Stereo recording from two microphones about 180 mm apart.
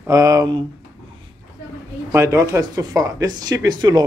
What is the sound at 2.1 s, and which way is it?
Speech, 15° right (ahead or behind).